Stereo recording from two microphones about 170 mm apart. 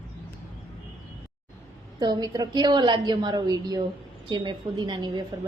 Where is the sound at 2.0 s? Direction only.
25° right (ahead or behind).